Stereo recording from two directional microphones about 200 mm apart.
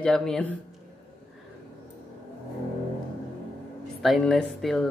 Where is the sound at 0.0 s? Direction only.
5° left (ahead or behind).